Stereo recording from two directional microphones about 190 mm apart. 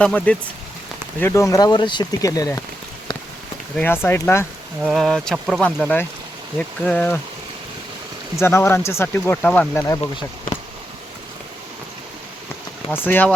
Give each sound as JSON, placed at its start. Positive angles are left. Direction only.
{"t": 0.0, "sound": "speech", "side_deg": 5}
{"t": 3.8, "sound": "speech", "side_deg": 10}
{"t": 4.8, "sound": "speech", "side_deg": 0}
{"t": 8.4, "sound": "speech", "side_deg": 15}
{"t": 13.1, "sound": "speech", "side_deg": 10}